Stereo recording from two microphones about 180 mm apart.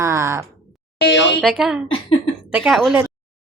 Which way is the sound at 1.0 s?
85° left.